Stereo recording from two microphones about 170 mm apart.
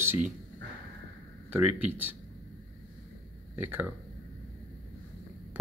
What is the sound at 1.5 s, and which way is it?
Speech, 10° right (ahead or behind).